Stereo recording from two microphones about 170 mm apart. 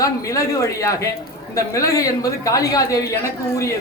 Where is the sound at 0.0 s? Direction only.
20° left (ahead or behind).